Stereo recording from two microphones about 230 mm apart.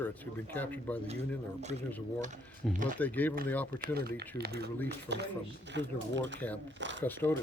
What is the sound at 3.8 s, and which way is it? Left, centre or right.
Speech, right.